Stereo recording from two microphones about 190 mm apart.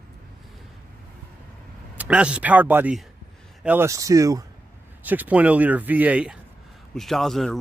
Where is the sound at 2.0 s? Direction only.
5° right (ahead or behind).